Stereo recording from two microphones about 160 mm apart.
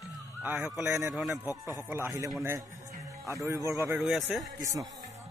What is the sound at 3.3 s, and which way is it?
Speech, 15° right (ahead or behind).